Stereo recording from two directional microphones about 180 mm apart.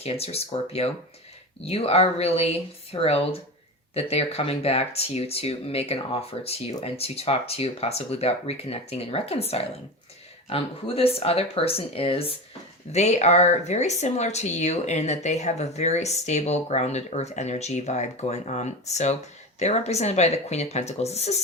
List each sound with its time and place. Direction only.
0.0 s speech: 35° left (ahead or behind)